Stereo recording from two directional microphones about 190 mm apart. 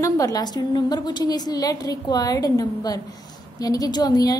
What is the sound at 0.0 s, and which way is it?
A woman's voice, 20° left (ahead or behind).